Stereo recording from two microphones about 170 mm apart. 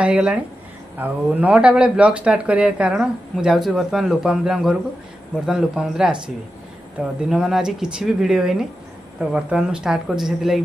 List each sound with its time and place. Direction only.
0.0 s a man's voice: 5° right (ahead or behind)